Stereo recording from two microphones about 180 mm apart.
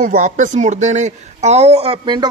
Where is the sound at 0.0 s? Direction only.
45° right (ahead or behind).